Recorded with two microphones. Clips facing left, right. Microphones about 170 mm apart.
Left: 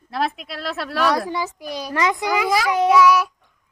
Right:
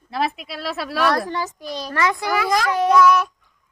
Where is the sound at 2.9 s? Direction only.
5° left (ahead or behind).